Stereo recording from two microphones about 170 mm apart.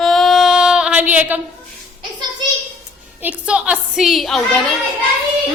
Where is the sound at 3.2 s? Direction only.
10° right (ahead or behind).